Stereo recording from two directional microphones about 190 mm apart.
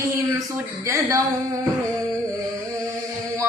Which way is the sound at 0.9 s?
15° right (ahead or behind).